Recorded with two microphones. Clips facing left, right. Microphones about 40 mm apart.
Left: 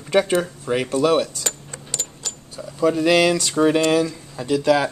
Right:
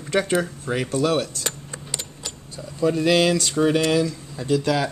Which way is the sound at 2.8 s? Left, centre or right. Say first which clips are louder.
Left 2 dB; centre.